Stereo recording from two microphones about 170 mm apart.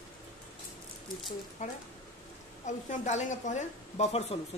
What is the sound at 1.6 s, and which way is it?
A woman's voice, 50° left (ahead or behind).